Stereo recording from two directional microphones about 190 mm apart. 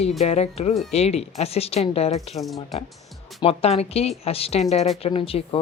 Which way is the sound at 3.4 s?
30° left (ahead or behind).